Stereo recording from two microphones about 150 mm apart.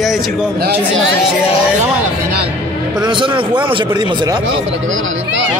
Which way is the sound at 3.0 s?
30° right (ahead or behind).